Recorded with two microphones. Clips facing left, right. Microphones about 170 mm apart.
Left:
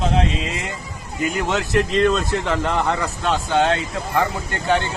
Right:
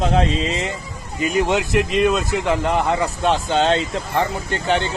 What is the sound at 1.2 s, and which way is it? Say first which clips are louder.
A man's voice: right 3 dB; 20° right (ahead or behind).